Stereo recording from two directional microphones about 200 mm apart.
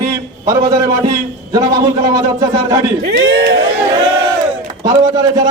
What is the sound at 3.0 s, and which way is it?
Speech, 55° right (ahead or behind).